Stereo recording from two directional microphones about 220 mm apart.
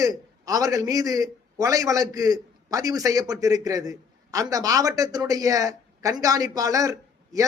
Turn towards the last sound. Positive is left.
turn(degrees=-15)  # may be behind; listen again after turning